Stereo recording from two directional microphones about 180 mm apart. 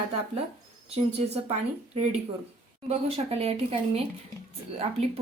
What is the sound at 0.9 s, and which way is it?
Speech, 35° right (ahead or behind).